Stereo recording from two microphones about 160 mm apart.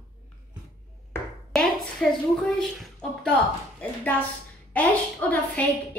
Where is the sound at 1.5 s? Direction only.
5° left (ahead or behind).